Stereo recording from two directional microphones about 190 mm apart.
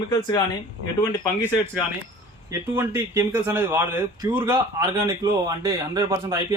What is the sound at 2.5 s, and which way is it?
Speech, 15° right (ahead or behind).